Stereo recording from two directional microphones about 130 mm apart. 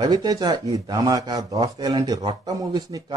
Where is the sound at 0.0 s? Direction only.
30° right (ahead or behind).